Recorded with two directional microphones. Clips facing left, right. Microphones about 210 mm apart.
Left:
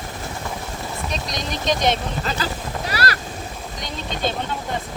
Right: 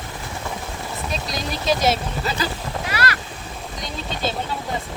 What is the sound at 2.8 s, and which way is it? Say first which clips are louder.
Vehicle: left 1 dB; 35° left (ahead or behind).